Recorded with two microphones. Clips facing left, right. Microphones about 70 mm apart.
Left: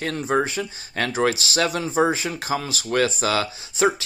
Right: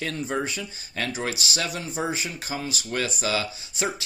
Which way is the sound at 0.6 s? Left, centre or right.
Left.